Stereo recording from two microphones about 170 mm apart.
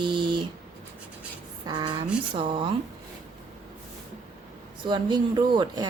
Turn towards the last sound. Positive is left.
turn(degrees=-25)  # may be behind; listen again after turning